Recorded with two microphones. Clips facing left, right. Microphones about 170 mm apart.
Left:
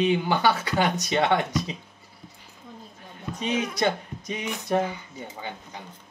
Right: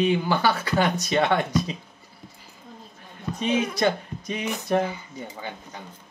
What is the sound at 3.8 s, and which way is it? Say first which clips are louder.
Speech: right 2 dB; 20° left (ahead or behind).